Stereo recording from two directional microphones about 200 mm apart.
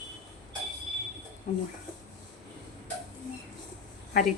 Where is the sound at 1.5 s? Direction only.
40° left (ahead or behind).